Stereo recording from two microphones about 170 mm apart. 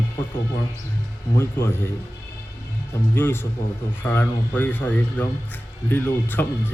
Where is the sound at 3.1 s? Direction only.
15° left (ahead or behind).